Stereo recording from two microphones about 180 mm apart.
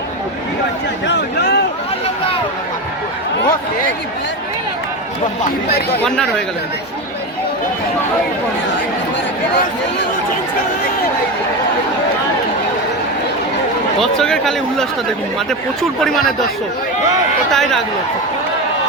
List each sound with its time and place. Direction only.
1.0 s speech: 70° left (ahead or behind)
5.6 s speech: 60° left (ahead or behind)
6.0 s a man's voice: 5° left (ahead or behind)
14.0 s a man's voice: 5° left (ahead or behind)
17.5 s a man's voice: centre (ahead or behind)